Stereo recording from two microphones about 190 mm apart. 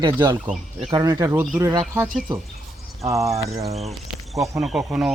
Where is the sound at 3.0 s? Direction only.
15° right (ahead or behind).